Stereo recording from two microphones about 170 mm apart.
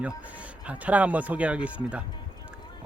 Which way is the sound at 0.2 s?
10° right (ahead or behind).